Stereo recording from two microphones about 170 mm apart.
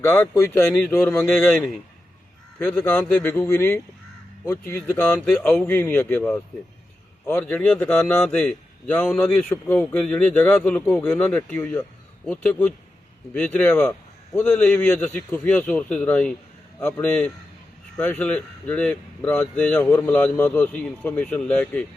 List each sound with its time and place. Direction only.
0.0 s speech: 10° left (ahead or behind)
2.6 s speech: 10° left (ahead or behind)